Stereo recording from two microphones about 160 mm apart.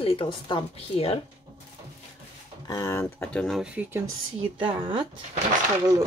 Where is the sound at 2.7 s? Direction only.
20° left (ahead or behind).